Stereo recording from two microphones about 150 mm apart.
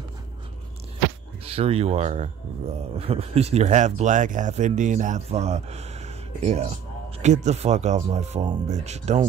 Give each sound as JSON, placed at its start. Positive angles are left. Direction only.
{"t": 1.4, "sound": "speech", "side_deg": -40}